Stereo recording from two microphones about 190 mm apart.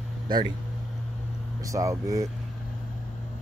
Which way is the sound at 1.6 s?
15° right (ahead or behind).